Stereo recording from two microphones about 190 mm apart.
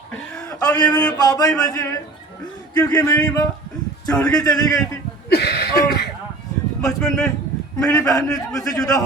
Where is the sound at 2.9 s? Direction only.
15° left (ahead or behind).